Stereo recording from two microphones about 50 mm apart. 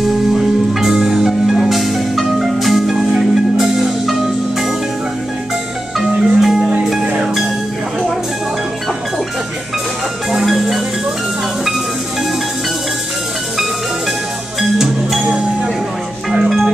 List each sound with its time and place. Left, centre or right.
0.0 s music: centre
6.2 s music: centre
10.4 s music: centre
14.6 s music: centre
15.2 s music: right